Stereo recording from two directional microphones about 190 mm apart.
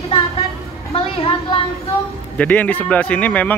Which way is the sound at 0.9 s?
30° left (ahead or behind).